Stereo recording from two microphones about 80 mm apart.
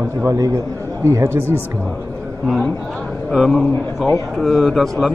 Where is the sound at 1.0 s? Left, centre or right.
Right.